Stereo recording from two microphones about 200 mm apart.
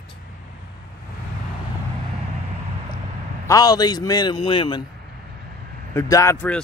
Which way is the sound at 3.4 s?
15° left (ahead or behind).